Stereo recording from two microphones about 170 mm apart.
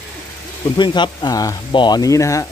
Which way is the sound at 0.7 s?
25° left (ahead or behind).